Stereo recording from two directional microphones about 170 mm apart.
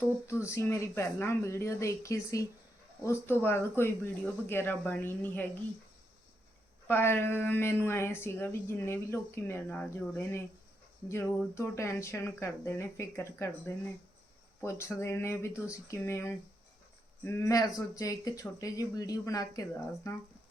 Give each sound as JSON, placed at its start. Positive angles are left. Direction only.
{"t": 0.3, "sound": "a woman's voice", "side_deg": 15}
{"t": 6.8, "sound": "a woman's voice", "side_deg": 10}